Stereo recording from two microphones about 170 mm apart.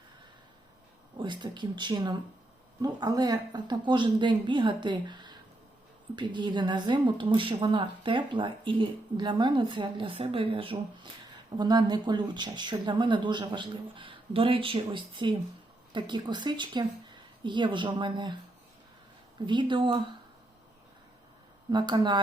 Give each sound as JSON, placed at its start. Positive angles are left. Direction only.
{"t": 1.2, "sound": "a woman's voice", "side_deg": -25}
{"t": 19.5, "sound": "a woman's voice", "side_deg": -30}
{"t": 21.7, "sound": "a woman's voice", "side_deg": -25}